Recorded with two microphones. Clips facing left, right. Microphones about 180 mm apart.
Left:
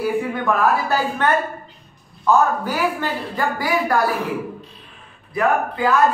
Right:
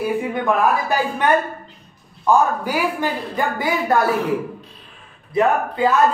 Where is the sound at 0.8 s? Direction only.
15° right (ahead or behind).